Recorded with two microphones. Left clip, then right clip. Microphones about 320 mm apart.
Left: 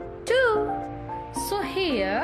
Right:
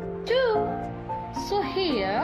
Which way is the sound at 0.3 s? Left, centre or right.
Left.